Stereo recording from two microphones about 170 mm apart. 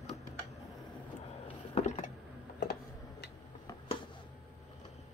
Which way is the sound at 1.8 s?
40° left (ahead or behind).